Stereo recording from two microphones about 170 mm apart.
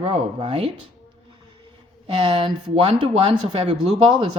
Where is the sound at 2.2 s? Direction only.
30° right (ahead or behind).